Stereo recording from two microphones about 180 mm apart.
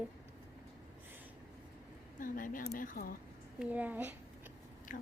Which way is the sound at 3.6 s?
10° right (ahead or behind).